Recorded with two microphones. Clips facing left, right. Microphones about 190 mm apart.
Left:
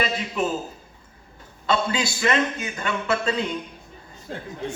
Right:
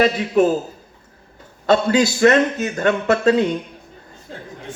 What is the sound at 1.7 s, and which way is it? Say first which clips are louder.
A man's voice: right 8 dB; 45° right (ahead or behind).